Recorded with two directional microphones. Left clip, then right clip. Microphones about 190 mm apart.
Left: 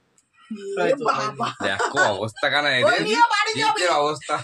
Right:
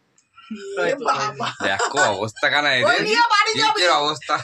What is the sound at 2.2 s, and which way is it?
Speech, 10° right (ahead or behind).